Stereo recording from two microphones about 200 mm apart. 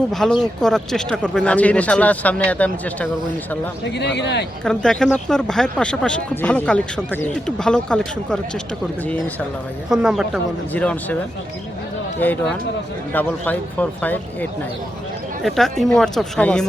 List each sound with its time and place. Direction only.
0.1 s speech: centre (ahead or behind)
3.8 s a man's voice: 60° left (ahead or behind)
4.6 s speech: 5° left (ahead or behind)
9.9 s speech: 5° right (ahead or behind)
10.7 s speech: 5° left (ahead or behind)
12.2 s speech: 10° left (ahead or behind)
15.4 s speech: centre (ahead or behind)